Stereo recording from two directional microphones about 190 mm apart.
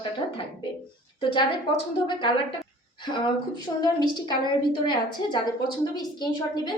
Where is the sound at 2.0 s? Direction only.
25° left (ahead or behind).